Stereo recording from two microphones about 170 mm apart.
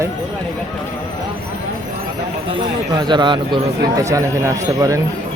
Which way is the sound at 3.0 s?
25° right (ahead or behind).